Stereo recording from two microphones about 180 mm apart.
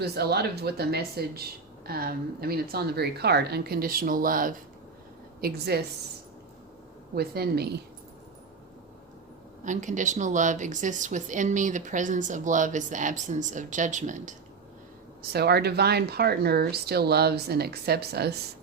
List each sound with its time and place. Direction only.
0.0 s speech: 65° right (ahead or behind)
5.4 s speech: 60° right (ahead or behind)
7.2 s speech: 60° right (ahead or behind)
9.6 s speech: 45° right (ahead or behind)
15.2 s speech: 60° right (ahead or behind)